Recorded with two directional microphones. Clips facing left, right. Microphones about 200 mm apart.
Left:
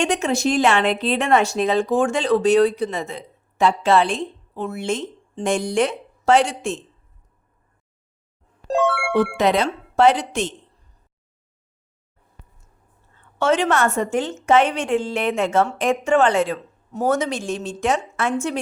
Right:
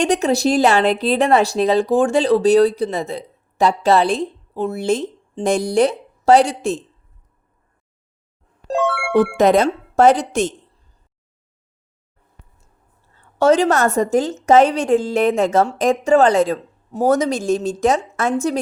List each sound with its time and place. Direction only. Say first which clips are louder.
0.0 s a woman's voice: right 4 dB; 35° right (ahead or behind)
8.6 s music: even; centre (ahead or behind)
9.4 s speech: right 5 dB; 45° right (ahead or behind)
13.1 s a woman's voice: right 5 dB; 40° right (ahead or behind)